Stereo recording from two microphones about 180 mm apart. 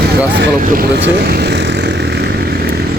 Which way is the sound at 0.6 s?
55° right (ahead or behind).